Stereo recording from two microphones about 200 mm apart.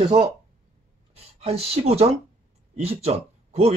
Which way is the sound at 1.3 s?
30° right (ahead or behind).